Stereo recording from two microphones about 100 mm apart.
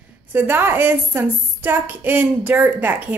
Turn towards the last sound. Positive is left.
turn(degrees=-20)  # may be behind; listen again after turning